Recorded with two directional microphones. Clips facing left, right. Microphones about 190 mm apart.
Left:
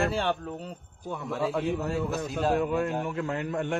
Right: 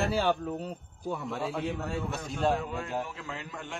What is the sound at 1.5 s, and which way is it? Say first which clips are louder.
A man's voice: left 5 dB; 60° left (ahead or behind).